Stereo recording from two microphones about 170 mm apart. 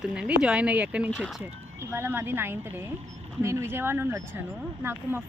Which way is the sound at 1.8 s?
15° right (ahead or behind).